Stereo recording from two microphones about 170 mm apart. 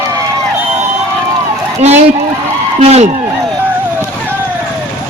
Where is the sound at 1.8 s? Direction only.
40° right (ahead or behind).